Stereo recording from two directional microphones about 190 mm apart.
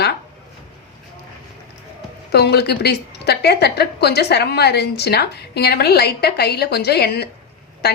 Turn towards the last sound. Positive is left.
turn(degrees=60)  # may be behind; listen again after turning